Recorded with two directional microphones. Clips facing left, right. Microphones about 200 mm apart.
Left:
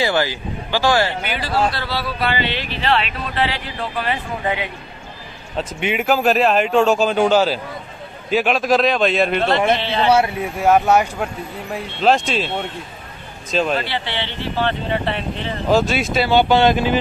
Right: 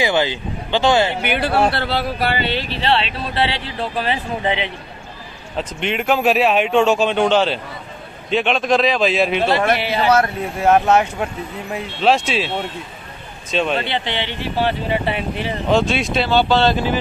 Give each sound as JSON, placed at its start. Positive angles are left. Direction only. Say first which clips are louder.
{"t": 0.0, "sound": "speech", "louder": "right 1 dB", "side_deg": -20}
{"t": 1.3, "sound": "speech", "louder": "right 5 dB", "side_deg": -60}
{"t": 2.8, "sound": "speech", "louder": "left 1 dB", "side_deg": -30}
{"t": 5.6, "sound": "a man's voice", "louder": "left 1 dB", "side_deg": 5}
{"t": 10.1, "sound": "a man's voice", "louder": "even", "side_deg": 5}
{"t": 13.7, "sound": "speech", "louder": "right 2 dB", "side_deg": -20}
{"t": 15.7, "sound": "a man's voice", "louder": "left 1 dB", "side_deg": 0}
{"t": 16.3, "sound": "speech", "louder": "left 2 dB", "side_deg": 15}